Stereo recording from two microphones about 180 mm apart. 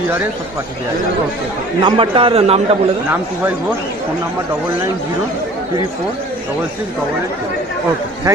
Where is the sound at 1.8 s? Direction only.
30° right (ahead or behind).